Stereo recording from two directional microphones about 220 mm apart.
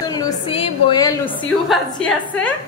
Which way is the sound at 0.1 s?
20° left (ahead or behind).